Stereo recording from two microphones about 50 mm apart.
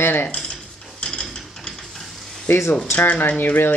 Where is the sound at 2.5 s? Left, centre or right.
Left.